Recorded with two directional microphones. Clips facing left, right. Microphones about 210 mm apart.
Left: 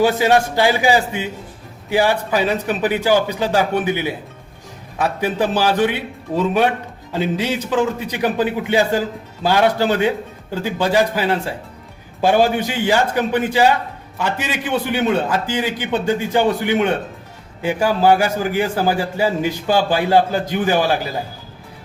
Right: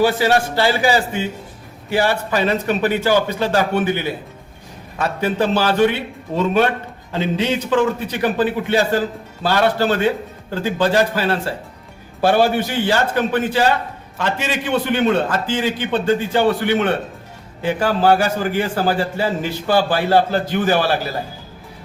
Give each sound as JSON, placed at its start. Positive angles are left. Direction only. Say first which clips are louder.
{"t": 0.0, "sound": "a man's voice", "louder": "left 1 dB", "side_deg": 20}